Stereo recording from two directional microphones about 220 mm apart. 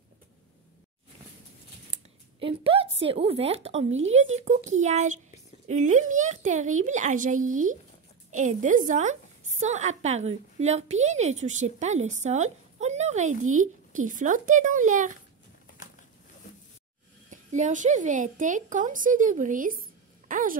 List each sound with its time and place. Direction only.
2.4 s a woman's voice: 25° right (ahead or behind)
17.3 s a woman's voice: 35° right (ahead or behind)